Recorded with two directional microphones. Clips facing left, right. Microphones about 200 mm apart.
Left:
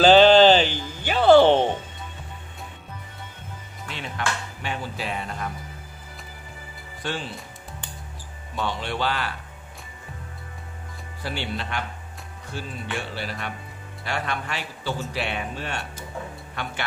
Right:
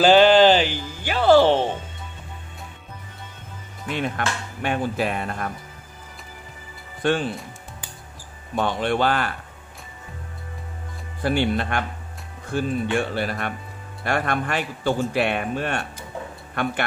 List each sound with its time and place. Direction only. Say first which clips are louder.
0.0 s a sound: even; 10° right (ahead or behind)
3.8 s speech: right 5 dB; 55° right (ahead or behind)
7.0 s speech: right 9 dB; 55° right (ahead or behind)
8.5 s speech: right 6 dB; 50° right (ahead or behind)
11.2 s speech: right 9 dB; 55° right (ahead or behind)